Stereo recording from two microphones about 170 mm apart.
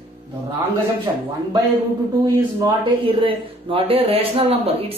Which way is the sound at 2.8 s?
30° right (ahead or behind).